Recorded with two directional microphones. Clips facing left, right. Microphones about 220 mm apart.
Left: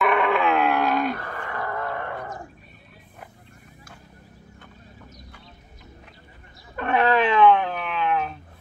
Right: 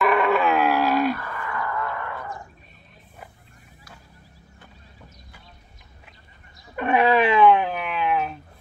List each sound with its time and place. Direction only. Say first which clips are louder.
0.0 s wild animals: right 1 dB; 5° right (ahead or behind)
1.1 s a sound: right 1 dB; 40° left (ahead or behind)
6.8 s cat: right 2 dB; 10° right (ahead or behind)